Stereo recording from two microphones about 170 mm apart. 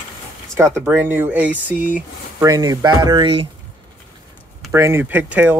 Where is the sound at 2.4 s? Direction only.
20° right (ahead or behind).